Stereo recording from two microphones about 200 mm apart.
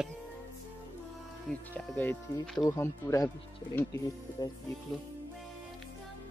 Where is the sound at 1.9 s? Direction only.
10° left (ahead or behind).